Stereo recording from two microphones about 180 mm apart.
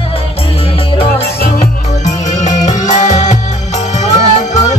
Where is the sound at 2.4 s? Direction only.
40° left (ahead or behind).